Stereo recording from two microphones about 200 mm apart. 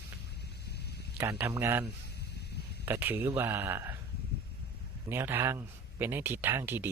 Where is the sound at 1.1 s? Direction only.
15° right (ahead or behind).